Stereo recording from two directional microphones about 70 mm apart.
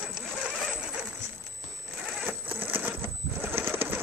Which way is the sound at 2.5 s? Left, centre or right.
Right.